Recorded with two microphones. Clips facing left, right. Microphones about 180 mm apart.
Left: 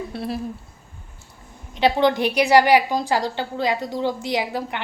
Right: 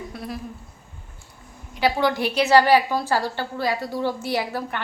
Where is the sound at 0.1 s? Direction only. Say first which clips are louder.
Left 5 dB; 30° left (ahead or behind).